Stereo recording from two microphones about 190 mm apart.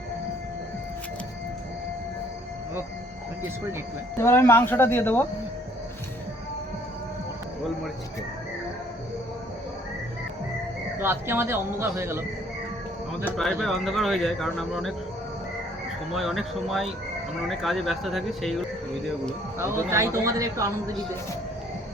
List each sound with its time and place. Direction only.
4.2 s speech: 15° left (ahead or behind)
10.9 s speech: 10° right (ahead or behind)
13.2 s speech: centre (ahead or behind)
16.1 s speech: centre (ahead or behind)
19.5 s speech: 15° right (ahead or behind)